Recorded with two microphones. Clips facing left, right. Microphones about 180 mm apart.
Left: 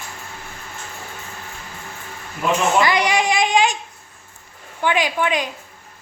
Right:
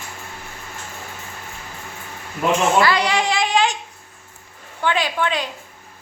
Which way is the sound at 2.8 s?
15° left (ahead or behind).